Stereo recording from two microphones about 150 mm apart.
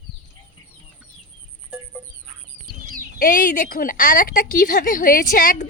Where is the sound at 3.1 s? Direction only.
65° left (ahead or behind).